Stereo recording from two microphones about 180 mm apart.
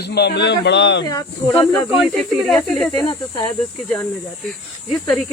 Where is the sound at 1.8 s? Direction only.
Centre (ahead or behind).